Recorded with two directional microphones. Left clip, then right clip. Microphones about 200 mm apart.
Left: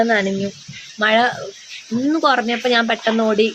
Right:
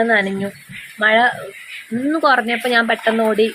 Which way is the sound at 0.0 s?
15° left (ahead or behind).